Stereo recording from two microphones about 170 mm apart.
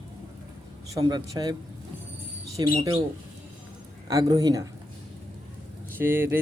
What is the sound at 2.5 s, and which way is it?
Speech, 20° right (ahead or behind).